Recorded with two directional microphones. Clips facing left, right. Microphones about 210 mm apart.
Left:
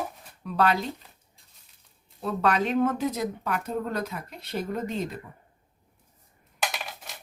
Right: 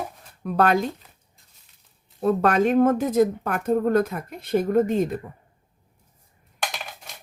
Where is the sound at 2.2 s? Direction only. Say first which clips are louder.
Right 6 dB; 50° right (ahead or behind).